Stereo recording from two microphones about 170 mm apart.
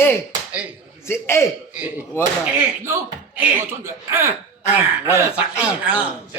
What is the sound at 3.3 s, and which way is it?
Speech, 10° right (ahead or behind).